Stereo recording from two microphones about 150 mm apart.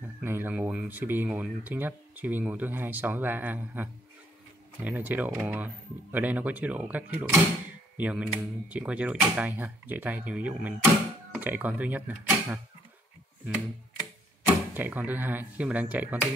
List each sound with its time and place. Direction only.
0.0 s speech: 15° right (ahead or behind)
14.4 s speech: 10° right (ahead or behind)